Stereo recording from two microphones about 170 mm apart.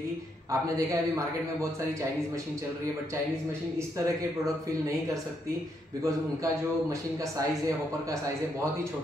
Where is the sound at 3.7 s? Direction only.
20° right (ahead or behind).